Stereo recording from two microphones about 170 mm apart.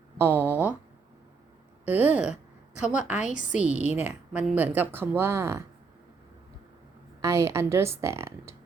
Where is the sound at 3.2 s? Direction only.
50° left (ahead or behind).